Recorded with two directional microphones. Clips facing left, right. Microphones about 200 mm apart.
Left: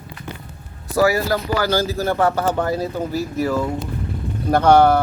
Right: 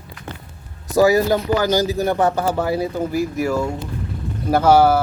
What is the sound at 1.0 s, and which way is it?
Speech, 15° right (ahead or behind).